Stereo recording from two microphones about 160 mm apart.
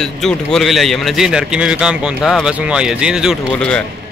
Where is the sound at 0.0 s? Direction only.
5° left (ahead or behind).